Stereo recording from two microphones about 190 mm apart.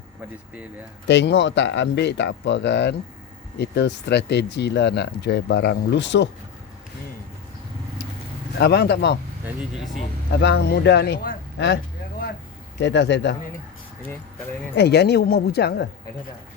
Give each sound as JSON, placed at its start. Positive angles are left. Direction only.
{"t": 1.0, "sound": "speech", "side_deg": 65}
{"t": 8.5, "sound": "speech", "side_deg": 60}
{"t": 10.4, "sound": "speech", "side_deg": 60}
{"t": 12.8, "sound": "speech", "side_deg": 65}
{"t": 14.8, "sound": "speech", "side_deg": 60}